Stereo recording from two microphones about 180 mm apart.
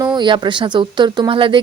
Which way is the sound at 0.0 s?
25° right (ahead or behind).